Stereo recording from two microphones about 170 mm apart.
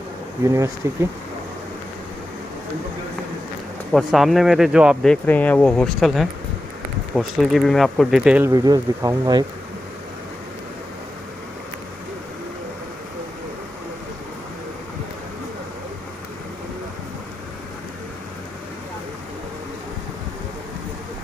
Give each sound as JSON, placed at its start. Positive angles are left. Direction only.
{"t": 0.8, "sound": "speech", "side_deg": -15}
{"t": 3.9, "sound": "speech", "side_deg": 0}
{"t": 8.5, "sound": "speech", "side_deg": -20}